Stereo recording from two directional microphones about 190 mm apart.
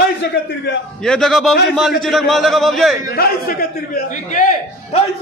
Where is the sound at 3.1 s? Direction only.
50° left (ahead or behind).